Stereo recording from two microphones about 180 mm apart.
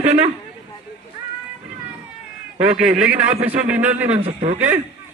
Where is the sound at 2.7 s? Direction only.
5° right (ahead or behind).